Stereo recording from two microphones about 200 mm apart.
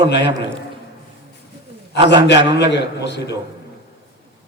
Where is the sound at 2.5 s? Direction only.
60° left (ahead or behind).